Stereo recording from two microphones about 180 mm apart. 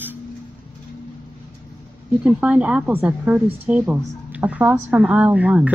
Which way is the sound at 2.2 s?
5° right (ahead or behind).